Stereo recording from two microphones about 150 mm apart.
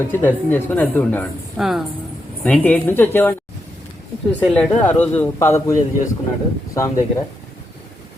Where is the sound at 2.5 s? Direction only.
10° left (ahead or behind).